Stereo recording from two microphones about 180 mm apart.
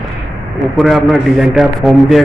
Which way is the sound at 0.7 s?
Centre (ahead or behind).